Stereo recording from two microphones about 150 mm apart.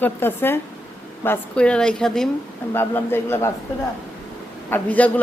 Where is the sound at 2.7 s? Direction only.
15° left (ahead or behind).